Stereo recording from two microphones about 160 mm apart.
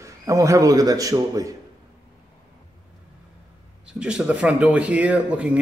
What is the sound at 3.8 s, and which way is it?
Speech, 5° right (ahead or behind).